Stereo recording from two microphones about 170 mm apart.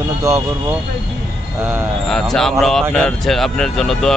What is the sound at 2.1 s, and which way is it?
Speech, 5° left (ahead or behind).